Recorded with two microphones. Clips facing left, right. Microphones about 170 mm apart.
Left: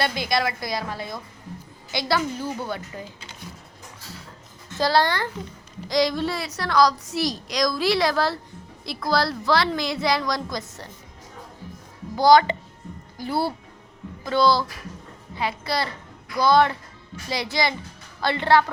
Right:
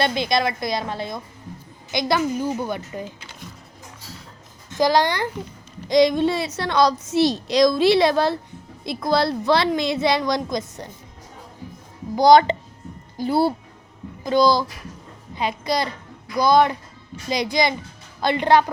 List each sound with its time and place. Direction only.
0.0 s a woman's voice: 20° right (ahead or behind)
4.8 s a woman's voice: 15° right (ahead or behind)
12.1 s a woman's voice: 20° right (ahead or behind)